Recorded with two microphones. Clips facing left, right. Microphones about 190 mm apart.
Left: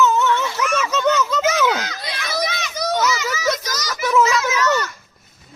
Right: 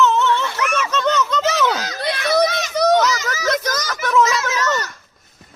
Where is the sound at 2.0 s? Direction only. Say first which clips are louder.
Right 8 dB; 55° right (ahead or behind).